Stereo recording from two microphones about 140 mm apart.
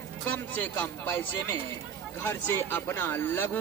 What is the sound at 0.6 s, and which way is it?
A man's voice, 15° left (ahead or behind).